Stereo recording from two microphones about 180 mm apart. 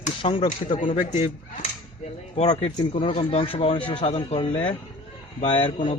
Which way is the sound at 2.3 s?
35° left (ahead or behind).